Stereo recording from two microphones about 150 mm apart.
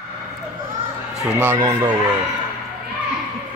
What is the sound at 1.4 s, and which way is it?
Speech, 15° right (ahead or behind).